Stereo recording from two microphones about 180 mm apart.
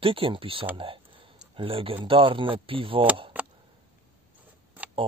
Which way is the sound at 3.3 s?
10° right (ahead or behind).